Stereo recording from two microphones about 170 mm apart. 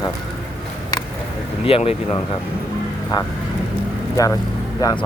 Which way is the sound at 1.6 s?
35° left (ahead or behind).